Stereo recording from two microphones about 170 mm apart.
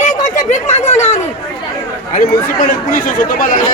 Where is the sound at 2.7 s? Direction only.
55° left (ahead or behind).